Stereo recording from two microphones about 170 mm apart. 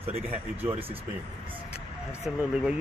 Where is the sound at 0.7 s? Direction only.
35° right (ahead or behind).